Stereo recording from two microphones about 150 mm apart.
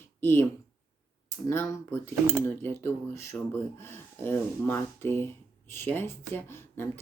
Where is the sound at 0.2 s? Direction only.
15° left (ahead or behind).